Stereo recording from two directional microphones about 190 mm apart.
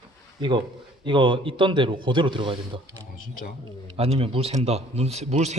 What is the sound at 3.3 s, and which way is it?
Speech, 50° left (ahead or behind).